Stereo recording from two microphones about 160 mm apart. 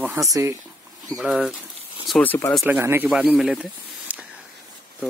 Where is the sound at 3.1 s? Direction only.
Centre (ahead or behind).